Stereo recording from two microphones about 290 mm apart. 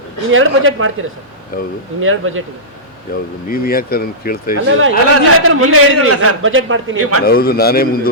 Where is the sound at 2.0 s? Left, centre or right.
Right.